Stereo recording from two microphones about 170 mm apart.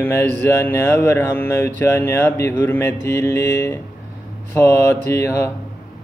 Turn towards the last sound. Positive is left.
turn(degrees=15)  # may be behind; listen again after turning